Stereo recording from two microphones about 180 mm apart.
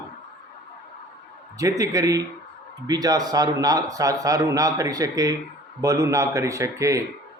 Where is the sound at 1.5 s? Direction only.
20° right (ahead or behind).